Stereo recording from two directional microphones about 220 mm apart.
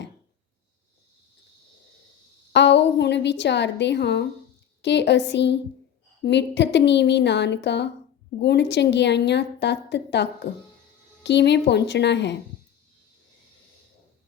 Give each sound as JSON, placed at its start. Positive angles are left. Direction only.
{"t": 2.5, "sound": "a woman's voice", "side_deg": 50}